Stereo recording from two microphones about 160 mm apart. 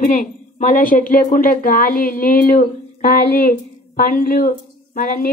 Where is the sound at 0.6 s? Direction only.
55° left (ahead or behind).